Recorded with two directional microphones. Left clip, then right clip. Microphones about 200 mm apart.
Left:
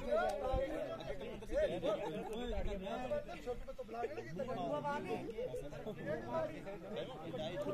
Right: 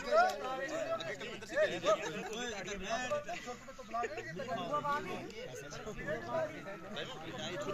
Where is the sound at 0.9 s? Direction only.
50° left (ahead or behind).